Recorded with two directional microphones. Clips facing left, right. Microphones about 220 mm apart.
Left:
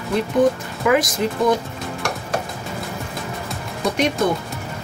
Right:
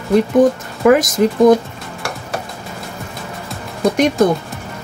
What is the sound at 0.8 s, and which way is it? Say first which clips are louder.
Speech: right 6 dB; 45° right (ahead or behind).